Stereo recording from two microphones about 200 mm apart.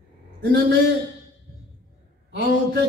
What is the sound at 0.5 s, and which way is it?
Speech, 60° right (ahead or behind).